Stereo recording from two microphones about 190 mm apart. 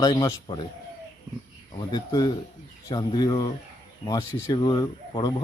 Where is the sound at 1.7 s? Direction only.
20° left (ahead or behind).